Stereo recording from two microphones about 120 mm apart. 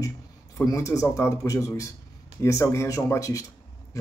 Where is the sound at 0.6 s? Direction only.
25° left (ahead or behind).